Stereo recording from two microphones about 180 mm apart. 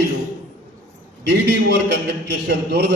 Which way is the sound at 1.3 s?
70° right (ahead or behind).